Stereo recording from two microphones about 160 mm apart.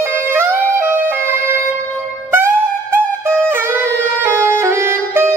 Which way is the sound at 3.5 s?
15° right (ahead or behind).